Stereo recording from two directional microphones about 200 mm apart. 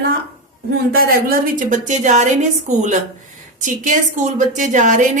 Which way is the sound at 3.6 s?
40° right (ahead or behind).